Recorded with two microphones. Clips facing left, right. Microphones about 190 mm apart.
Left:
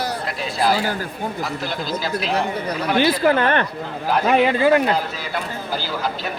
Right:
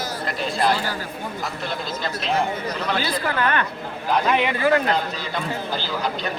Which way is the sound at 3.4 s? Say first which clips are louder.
Left 3 dB; 30° left (ahead or behind).